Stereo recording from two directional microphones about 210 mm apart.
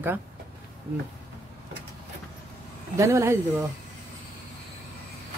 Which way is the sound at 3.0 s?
15° right (ahead or behind).